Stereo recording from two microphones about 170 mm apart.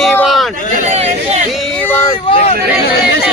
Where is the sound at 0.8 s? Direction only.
40° right (ahead or behind).